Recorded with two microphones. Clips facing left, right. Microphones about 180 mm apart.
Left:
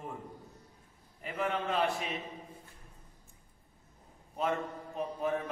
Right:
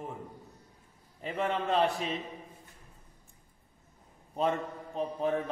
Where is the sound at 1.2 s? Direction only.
35° right (ahead or behind).